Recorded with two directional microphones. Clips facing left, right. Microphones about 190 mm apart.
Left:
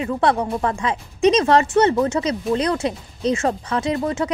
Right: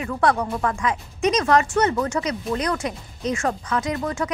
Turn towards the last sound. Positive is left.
turn(degrees=25)  # may be behind; listen again after turning